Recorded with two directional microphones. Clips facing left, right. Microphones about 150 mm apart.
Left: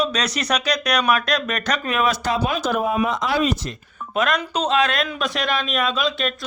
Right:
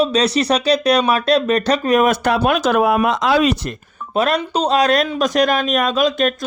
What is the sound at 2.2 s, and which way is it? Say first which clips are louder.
Speech: right 6 dB; 65° right (ahead or behind).